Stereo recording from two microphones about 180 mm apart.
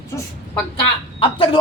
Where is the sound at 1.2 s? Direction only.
30° left (ahead or behind).